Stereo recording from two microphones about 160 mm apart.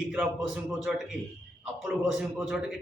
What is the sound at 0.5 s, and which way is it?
A man's voice, 5° right (ahead or behind).